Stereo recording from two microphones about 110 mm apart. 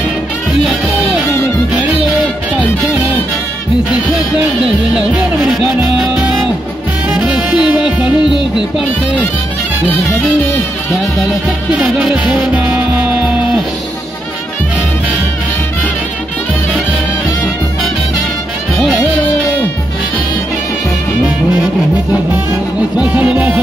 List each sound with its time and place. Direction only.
4.9 s music: 5° right (ahead or behind)
7.3 s music: 45° left (ahead or behind)
8.0 s music: 5° right (ahead or behind)
11.8 s music: 5° right (ahead or behind)
22.9 s music: 10° right (ahead or behind)